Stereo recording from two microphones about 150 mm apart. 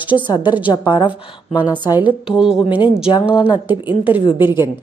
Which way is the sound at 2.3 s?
5° right (ahead or behind).